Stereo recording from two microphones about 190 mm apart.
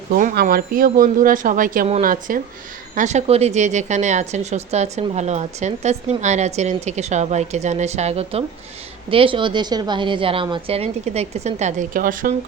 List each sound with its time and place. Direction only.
0.1 s a woman's voice: 45° right (ahead or behind)